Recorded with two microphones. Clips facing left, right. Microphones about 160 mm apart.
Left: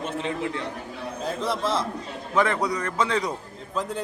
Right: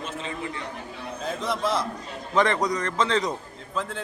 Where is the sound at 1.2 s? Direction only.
30° left (ahead or behind).